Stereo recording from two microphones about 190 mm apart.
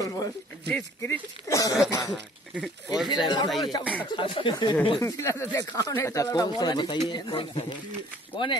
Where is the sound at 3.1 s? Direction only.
25° left (ahead or behind).